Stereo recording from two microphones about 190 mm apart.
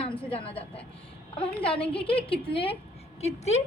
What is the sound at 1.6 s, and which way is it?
A woman's voice, 30° left (ahead or behind).